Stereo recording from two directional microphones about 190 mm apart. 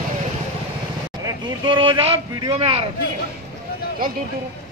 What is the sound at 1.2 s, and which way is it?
Speech, 25° right (ahead or behind).